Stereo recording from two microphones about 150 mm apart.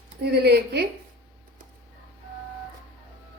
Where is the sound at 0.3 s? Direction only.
90° right.